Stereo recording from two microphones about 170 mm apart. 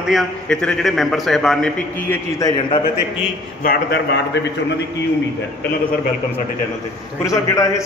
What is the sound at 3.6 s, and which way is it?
Speech, 70° left (ahead or behind).